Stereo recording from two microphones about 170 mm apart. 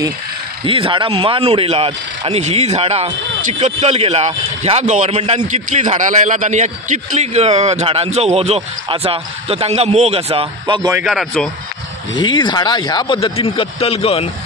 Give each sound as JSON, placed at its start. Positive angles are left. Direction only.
{"t": 0.7, "sound": "speech", "side_deg": -30}
{"t": 11.1, "sound": "speech", "side_deg": 0}
{"t": 12.2, "sound": "speech", "side_deg": 25}